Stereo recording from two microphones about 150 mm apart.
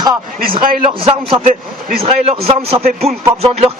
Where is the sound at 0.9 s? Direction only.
35° right (ahead or behind).